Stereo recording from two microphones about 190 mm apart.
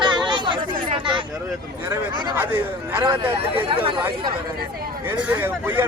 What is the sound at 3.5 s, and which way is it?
Speech, 30° right (ahead or behind).